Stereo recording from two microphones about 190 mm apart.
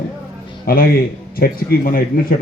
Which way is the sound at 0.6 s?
50° left (ahead or behind).